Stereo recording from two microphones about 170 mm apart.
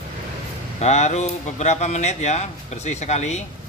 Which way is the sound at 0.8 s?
40° left (ahead or behind).